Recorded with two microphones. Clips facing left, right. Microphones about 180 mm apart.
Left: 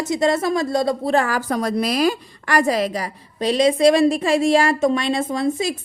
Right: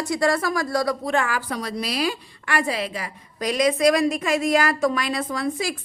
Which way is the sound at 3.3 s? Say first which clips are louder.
Left 4 dB; 30° left (ahead or behind).